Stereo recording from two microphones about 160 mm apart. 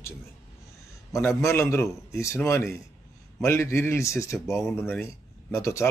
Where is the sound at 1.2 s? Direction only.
15° left (ahead or behind).